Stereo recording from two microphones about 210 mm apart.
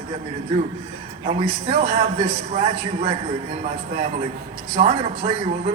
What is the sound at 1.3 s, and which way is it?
A man's voice, 30° right (ahead or behind).